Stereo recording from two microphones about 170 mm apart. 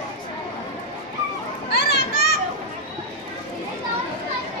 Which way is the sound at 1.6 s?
70° left (ahead or behind).